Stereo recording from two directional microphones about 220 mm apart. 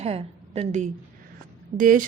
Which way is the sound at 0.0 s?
30° right (ahead or behind).